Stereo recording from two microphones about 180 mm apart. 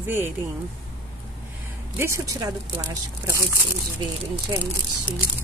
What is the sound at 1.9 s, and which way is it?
Speech, 15° right (ahead or behind).